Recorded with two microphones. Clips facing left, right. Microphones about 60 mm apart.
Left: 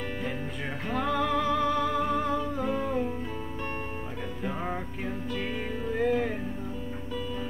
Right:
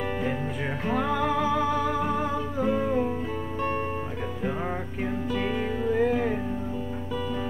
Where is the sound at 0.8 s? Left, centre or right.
Centre.